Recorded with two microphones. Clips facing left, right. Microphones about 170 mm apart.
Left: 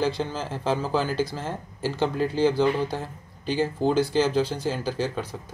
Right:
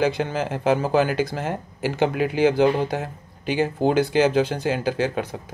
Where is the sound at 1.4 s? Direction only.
15° right (ahead or behind).